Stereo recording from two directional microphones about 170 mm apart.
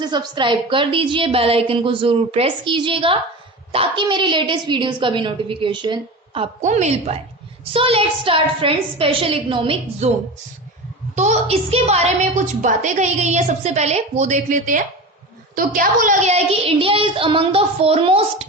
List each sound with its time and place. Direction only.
0.0 s a woman's voice: 25° right (ahead or behind)
6.6 s a woman's voice: 45° right (ahead or behind)
11.1 s a woman's voice: 45° right (ahead or behind)